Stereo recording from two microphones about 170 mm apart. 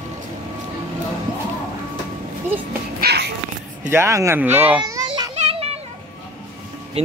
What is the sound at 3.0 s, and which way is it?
Cat, 70° right (ahead or behind).